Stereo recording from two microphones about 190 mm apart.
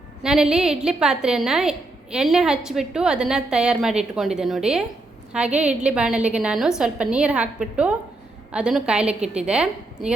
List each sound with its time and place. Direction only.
0.2 s a woman's voice: 5° right (ahead or behind)